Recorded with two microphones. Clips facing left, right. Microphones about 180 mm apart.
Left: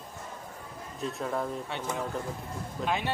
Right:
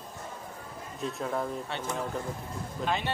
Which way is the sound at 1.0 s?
Centre (ahead or behind).